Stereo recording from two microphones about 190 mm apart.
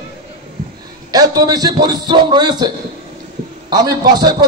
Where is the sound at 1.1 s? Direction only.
20° right (ahead or behind).